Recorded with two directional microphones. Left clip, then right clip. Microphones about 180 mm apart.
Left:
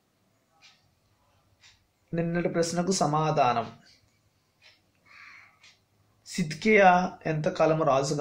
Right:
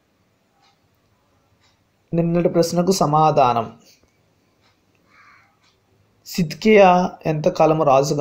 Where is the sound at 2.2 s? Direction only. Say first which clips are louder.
Right 10 dB; 40° right (ahead or behind).